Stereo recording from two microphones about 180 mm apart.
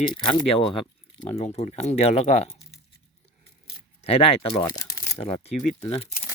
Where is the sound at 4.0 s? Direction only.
35° left (ahead or behind).